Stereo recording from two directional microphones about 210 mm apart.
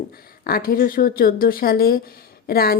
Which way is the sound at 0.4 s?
45° left (ahead or behind).